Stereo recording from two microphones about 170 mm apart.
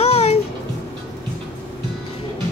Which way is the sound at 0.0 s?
35° left (ahead or behind).